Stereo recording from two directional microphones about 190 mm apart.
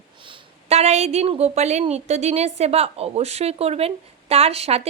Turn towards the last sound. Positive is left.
turn(degrees=-35)  # may be behind; listen again after turning